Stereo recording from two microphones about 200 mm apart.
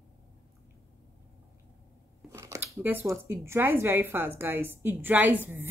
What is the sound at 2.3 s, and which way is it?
Speech, 15° right (ahead or behind).